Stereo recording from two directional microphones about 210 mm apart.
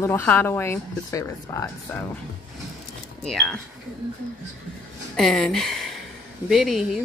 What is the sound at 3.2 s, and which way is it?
Speech, centre (ahead or behind).